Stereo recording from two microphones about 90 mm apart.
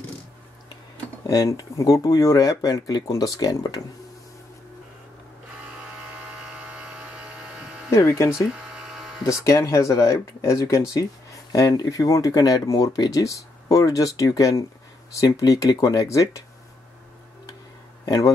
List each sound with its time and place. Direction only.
1.3 s speech: 40° left (ahead or behind)
6.2 s hum: 15° right (ahead or behind)
7.9 s speech: 30° left (ahead or behind)
8.5 s a sound: 10° right (ahead or behind)
9.2 s speech: 35° left (ahead or behind)
11.5 s speech: 45° left (ahead or behind)
18.0 s speech: 40° left (ahead or behind)